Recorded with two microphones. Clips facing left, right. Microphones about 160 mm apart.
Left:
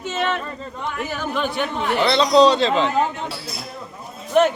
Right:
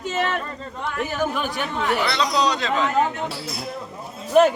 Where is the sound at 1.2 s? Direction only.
10° right (ahead or behind).